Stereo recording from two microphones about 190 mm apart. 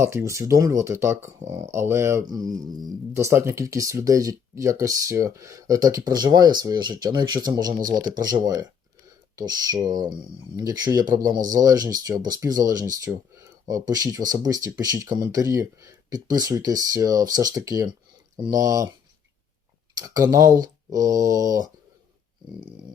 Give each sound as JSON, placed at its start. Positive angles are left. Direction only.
{"t": 0.0, "sound": "speech", "side_deg": -15}
{"t": 11.3, "sound": "speech", "side_deg": -45}
{"t": 11.6, "sound": "speech", "side_deg": -20}
{"t": 20.0, "sound": "speech", "side_deg": -20}